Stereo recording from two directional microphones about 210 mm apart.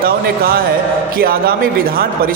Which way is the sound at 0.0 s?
45° right (ahead or behind).